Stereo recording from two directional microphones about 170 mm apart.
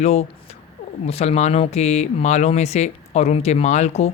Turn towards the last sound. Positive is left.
turn(degrees=40)  # may be behind; listen again after turning